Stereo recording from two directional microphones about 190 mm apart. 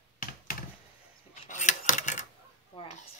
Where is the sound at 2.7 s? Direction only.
25° left (ahead or behind).